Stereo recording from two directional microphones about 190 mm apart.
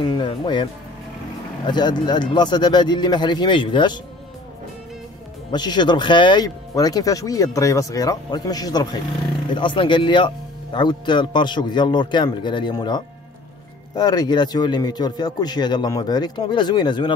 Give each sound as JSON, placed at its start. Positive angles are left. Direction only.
{"t": 0.0, "sound": "speech", "side_deg": 25}
{"t": 1.7, "sound": "speech", "side_deg": 25}
{"t": 5.5, "sound": "speech", "side_deg": 25}